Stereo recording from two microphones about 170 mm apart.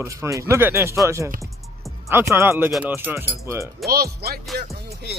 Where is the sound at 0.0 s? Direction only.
15° right (ahead or behind).